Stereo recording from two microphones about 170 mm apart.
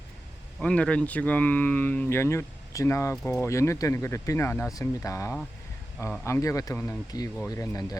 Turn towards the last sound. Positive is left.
turn(degrees=20)  # may be behind; listen again after turning